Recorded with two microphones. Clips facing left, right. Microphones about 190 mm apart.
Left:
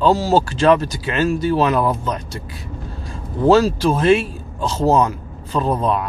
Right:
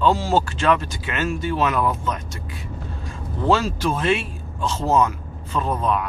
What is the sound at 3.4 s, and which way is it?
Speech, 40° left (ahead or behind).